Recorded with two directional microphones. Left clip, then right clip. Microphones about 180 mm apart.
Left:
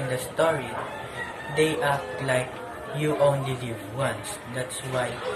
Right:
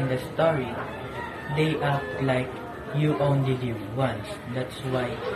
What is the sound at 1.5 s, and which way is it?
Speech, 20° left (ahead or behind).